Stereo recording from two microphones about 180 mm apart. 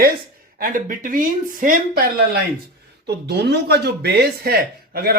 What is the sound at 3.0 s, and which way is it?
Speech, 70° right (ahead or behind).